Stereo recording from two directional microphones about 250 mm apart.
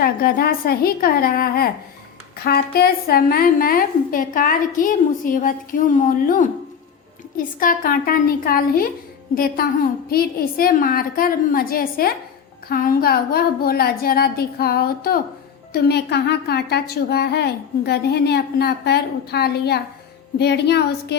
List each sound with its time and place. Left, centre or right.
0.0 s a woman's voice: left